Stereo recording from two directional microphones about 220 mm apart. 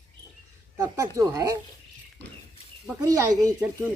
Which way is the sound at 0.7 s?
15° right (ahead or behind).